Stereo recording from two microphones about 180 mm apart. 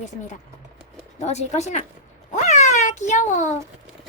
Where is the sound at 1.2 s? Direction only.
40° left (ahead or behind).